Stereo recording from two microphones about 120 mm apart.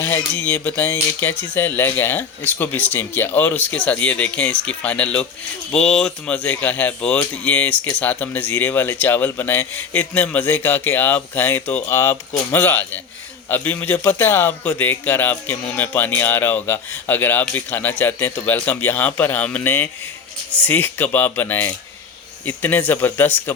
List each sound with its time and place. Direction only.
0.0 s a man's voice: 15° left (ahead or behind)